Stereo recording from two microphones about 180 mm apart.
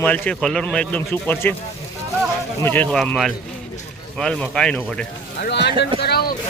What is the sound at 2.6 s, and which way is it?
Speech, 10° left (ahead or behind).